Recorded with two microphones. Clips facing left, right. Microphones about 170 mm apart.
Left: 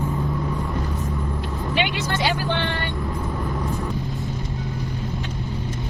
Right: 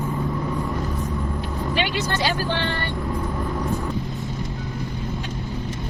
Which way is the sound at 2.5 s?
15° left (ahead or behind).